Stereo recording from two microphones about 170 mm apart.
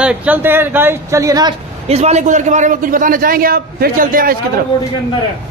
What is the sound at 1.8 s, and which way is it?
A man's voice, 40° right (ahead or behind).